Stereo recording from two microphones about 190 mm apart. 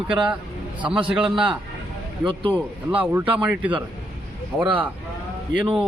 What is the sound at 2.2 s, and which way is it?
Speech, 25° right (ahead or behind).